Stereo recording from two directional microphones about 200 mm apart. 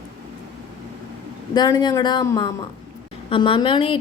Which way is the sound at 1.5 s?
20° left (ahead or behind).